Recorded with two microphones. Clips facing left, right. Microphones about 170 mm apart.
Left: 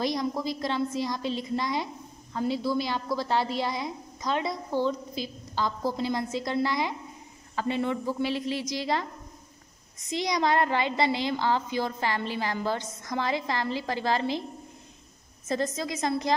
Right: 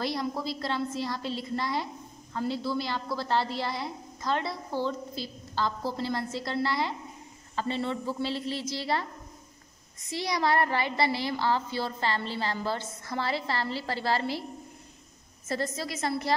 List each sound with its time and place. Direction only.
0.0 s a woman's voice: 15° left (ahead or behind)
10.0 s a woman's voice: 20° left (ahead or behind)
15.4 s a woman's voice: 20° left (ahead or behind)